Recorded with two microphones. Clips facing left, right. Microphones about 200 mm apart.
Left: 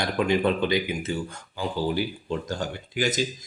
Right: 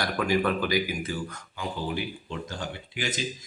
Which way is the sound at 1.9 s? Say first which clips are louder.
Left 5 dB; 40° left (ahead or behind).